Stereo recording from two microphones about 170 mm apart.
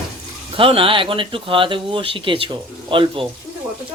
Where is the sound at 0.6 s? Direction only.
30° right (ahead or behind).